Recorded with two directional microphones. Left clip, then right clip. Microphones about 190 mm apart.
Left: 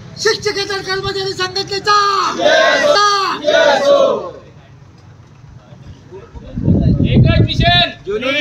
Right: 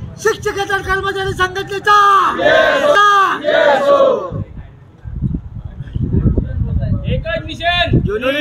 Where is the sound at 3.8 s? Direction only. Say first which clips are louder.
Even; 15° right (ahead or behind).